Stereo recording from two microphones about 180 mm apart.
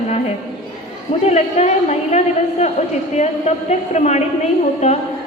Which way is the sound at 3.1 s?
40° left (ahead or behind).